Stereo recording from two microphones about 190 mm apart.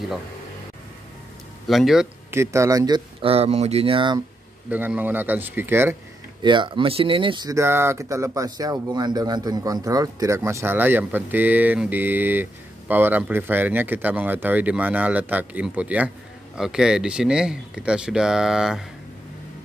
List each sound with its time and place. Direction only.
1.7 s speech: centre (ahead or behind)
2.3 s speech: 15° right (ahead or behind)
4.6 s speech: 10° right (ahead or behind)
6.4 s speech: 25° right (ahead or behind); by 18.9 s centre (ahead or behind)